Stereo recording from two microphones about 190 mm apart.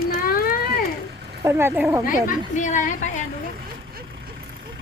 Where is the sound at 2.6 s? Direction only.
40° left (ahead or behind).